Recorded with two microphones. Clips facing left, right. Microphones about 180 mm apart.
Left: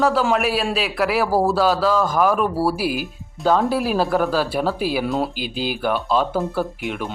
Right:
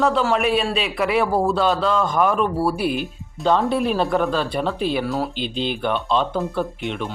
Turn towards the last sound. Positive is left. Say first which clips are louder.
# even
turn(degrees=5)  # may be behind; listen again after turning